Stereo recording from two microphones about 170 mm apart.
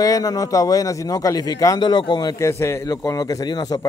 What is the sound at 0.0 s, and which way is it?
A man's voice, 20° left (ahead or behind).